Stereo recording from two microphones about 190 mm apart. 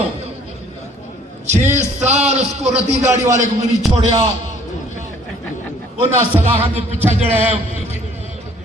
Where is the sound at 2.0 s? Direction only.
35° right (ahead or behind).